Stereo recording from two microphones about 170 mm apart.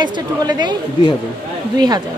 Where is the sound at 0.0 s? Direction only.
25° right (ahead or behind).